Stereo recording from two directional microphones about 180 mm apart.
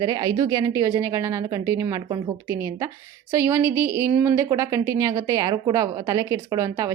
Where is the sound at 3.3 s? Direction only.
15° right (ahead or behind).